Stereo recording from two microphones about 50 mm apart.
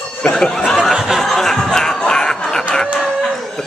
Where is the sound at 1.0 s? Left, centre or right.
Centre.